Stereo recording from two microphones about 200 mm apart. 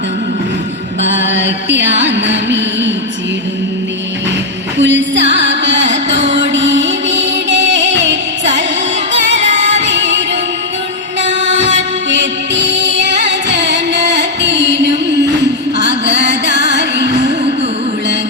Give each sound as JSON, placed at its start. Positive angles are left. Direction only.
{"t": 1.0, "sound": "music", "side_deg": -65}
{"t": 4.8, "sound": "music", "side_deg": -65}
{"t": 9.9, "sound": "music", "side_deg": -60}
{"t": 12.2, "sound": "music", "side_deg": -65}